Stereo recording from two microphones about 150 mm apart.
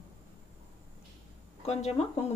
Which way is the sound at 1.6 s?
45° left (ahead or behind).